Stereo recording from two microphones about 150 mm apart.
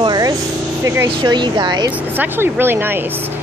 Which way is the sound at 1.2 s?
30° right (ahead or behind).